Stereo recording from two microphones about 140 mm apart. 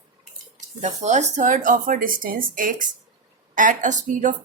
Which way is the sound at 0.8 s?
55° right (ahead or behind).